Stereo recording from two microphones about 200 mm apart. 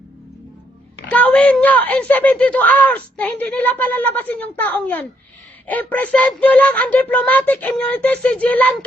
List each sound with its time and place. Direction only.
1.1 s speech: 10° left (ahead or behind)